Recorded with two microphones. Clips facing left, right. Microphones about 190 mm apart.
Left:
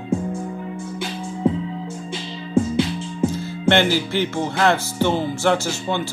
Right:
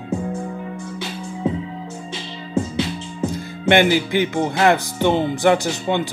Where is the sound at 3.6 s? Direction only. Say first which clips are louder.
Right 2 dB; 15° right (ahead or behind).